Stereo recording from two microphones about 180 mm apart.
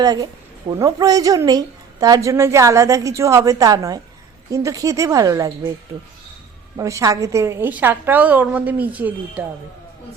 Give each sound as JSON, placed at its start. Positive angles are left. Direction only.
{"t": 0.0, "sound": "a woman's voice", "side_deg": -20}
{"t": 6.7, "sound": "a woman's voice", "side_deg": -15}